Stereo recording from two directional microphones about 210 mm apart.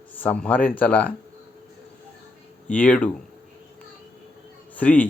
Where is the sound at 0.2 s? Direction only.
5° left (ahead or behind).